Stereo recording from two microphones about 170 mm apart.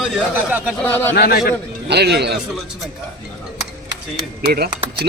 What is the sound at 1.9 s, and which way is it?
Speech, 75° right (ahead or behind).